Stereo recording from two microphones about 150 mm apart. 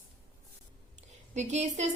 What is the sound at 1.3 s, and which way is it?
Speech, 50° right (ahead or behind).